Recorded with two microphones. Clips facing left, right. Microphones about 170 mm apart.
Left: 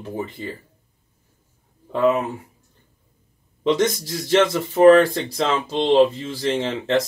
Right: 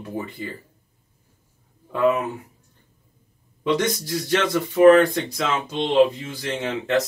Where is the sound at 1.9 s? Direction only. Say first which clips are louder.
Left 1 dB; 25° left (ahead or behind).